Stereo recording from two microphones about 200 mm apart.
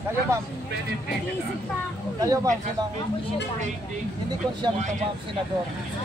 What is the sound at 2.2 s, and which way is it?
Speech, 15° right (ahead or behind).